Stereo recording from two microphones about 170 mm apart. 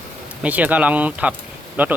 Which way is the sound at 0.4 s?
10° right (ahead or behind).